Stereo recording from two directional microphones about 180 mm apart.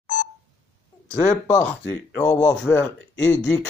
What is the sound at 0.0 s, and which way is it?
Telephone dialing, 40° left (ahead or behind).